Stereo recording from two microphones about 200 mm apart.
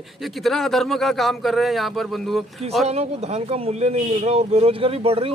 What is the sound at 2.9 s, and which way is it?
Speech, 30° right (ahead or behind).